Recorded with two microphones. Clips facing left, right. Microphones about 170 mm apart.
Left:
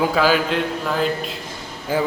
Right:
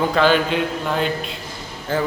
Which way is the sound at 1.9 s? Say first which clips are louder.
Left 1 dB; 10° left (ahead or behind).